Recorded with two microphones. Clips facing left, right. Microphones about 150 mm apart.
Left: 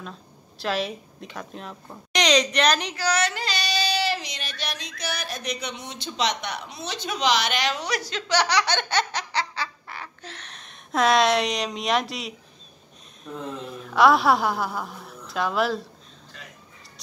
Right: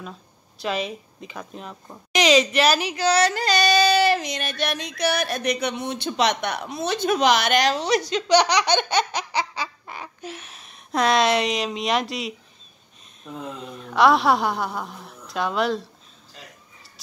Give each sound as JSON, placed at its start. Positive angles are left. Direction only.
{"t": 0.6, "sound": "speech", "side_deg": 0}
{"t": 3.0, "sound": "female singing", "side_deg": -30}
{"t": 7.7, "sound": "speech", "side_deg": -25}